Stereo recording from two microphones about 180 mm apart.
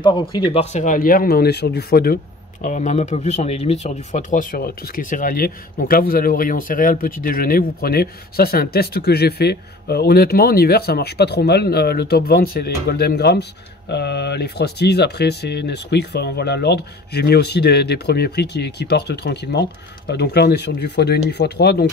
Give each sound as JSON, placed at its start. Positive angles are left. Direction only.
{"t": 0.0, "sound": "speech", "side_deg": 25}
{"t": 2.6, "sound": "speech", "side_deg": 45}